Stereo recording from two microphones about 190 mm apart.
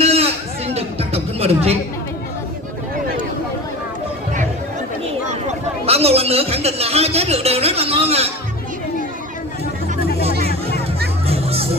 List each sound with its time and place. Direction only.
0.0 s music: 30° right (ahead or behind)
5.9 s a sound: 30° right (ahead or behind)
11.2 s music: 30° right (ahead or behind)